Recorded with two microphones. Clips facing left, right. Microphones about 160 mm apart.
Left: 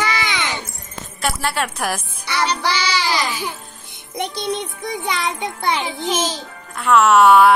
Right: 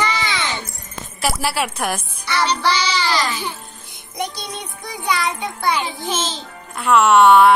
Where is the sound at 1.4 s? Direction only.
5° right (ahead or behind).